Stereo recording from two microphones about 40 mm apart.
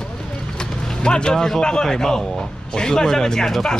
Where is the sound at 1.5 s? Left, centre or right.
Centre.